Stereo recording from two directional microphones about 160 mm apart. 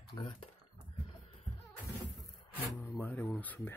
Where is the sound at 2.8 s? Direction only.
10° left (ahead or behind).